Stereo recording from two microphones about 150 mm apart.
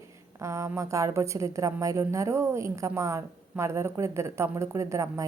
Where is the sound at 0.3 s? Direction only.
20° right (ahead or behind).